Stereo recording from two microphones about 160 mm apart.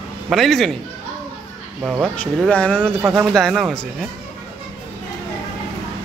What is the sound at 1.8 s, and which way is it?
Speech, 10° right (ahead or behind).